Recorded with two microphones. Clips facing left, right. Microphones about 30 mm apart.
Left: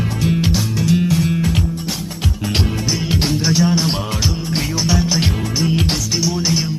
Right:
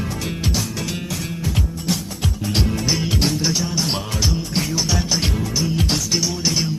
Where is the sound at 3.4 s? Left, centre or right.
Centre.